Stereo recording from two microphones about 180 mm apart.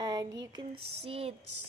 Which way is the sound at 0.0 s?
20° right (ahead or behind).